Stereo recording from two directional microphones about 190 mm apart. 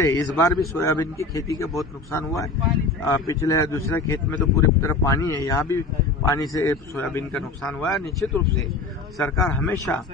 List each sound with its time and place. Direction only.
0.0 s a man's voice: 15° left (ahead or behind)